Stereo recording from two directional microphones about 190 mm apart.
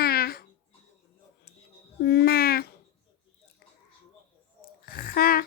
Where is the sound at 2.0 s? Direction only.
55° left (ahead or behind).